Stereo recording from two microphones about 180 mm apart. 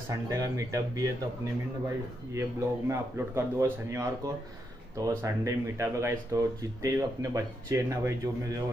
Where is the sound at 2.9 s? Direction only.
15° right (ahead or behind).